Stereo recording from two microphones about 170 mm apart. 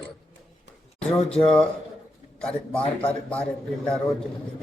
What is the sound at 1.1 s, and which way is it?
A man's voice, 5° left (ahead or behind).